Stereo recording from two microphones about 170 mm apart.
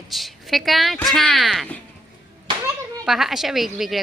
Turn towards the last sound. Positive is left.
turn(degrees=0)  # may be behind; listen again after turning